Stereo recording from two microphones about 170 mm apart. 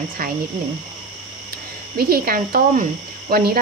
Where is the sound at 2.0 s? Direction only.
60° right (ahead or behind).